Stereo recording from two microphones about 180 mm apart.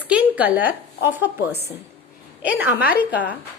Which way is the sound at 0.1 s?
10° right (ahead or behind).